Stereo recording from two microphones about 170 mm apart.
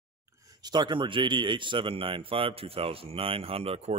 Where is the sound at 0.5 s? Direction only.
25° right (ahead or behind).